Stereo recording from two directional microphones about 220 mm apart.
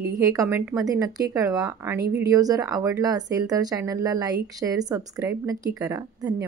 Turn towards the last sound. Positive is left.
turn(degrees=-15)  # may be behind; listen again after turning